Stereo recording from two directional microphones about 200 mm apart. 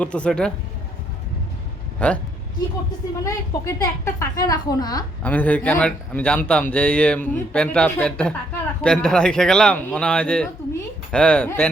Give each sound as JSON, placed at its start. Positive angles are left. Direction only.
{"t": 0.0, "sound": "a man's voice", "side_deg": 5}
{"t": 2.0, "sound": "a woman's voice", "side_deg": 5}
{"t": 3.2, "sound": "a woman's voice", "side_deg": 15}
{"t": 5.2, "sound": "a man's voice", "side_deg": 10}